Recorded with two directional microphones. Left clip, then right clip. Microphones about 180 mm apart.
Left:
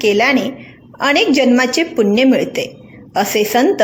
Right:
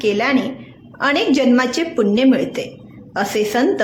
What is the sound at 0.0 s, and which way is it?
A woman's voice, 15° left (ahead or behind).